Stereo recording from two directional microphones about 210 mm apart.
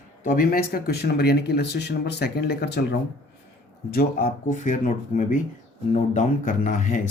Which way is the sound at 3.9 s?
40° left (ahead or behind).